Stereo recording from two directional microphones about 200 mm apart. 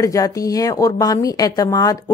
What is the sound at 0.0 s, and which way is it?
A woman's voice, 15° left (ahead or behind).